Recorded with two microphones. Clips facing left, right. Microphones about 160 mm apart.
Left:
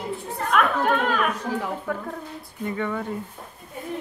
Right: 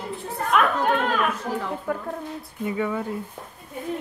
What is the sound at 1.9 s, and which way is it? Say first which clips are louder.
Speech: right 2 dB; 5° right (ahead or behind).